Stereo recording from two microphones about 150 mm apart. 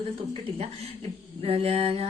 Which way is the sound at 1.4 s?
40° right (ahead or behind).